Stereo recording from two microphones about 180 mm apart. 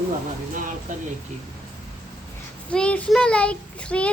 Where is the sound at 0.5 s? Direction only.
45° right (ahead or behind).